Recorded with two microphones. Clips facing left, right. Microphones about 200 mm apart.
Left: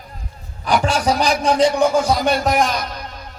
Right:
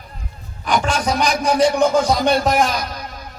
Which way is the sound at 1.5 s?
20° left (ahead or behind).